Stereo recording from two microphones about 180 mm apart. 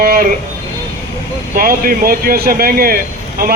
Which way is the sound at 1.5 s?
50° right (ahead or behind).